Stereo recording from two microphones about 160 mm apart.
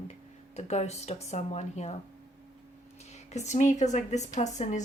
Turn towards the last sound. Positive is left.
turn(degrees=45)  # may be behind; listen again after turning